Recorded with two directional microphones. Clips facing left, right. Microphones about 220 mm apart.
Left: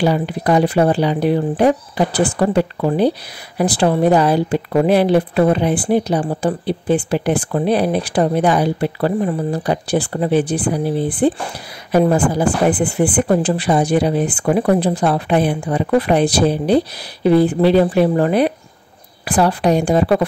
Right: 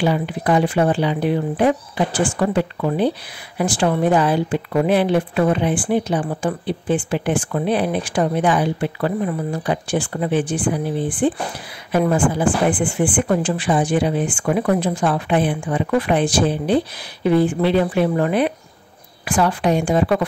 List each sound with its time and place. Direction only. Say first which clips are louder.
0.0 s speech: left 3 dB; 40° left (ahead or behind)